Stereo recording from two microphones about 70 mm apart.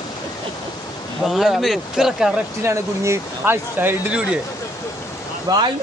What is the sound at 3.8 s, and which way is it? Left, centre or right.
Speech, right.